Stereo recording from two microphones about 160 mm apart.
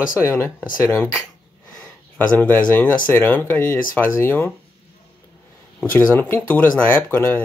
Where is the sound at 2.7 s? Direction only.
10° left (ahead or behind).